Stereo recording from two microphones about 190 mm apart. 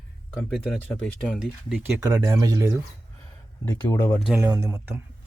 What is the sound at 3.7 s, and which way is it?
Speech, 15° left (ahead or behind).